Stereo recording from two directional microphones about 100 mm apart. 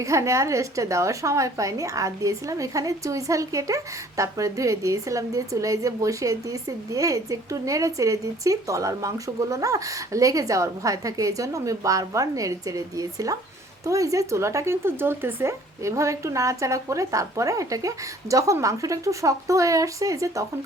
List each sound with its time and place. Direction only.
0.0 s a woman's voice: 30° right (ahead or behind)